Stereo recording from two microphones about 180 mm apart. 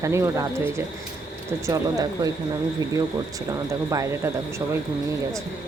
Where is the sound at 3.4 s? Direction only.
20° right (ahead or behind).